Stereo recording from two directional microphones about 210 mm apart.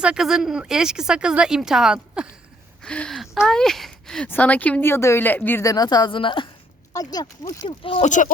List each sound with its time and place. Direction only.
0.0 s speech: 5° right (ahead or behind); by 8.1 s 25° left (ahead or behind)